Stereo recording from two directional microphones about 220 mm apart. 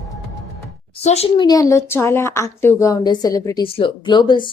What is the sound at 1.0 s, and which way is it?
A woman's voice, 25° left (ahead or behind).